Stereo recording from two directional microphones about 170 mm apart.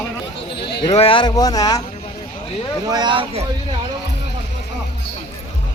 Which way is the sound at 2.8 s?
25° right (ahead or behind).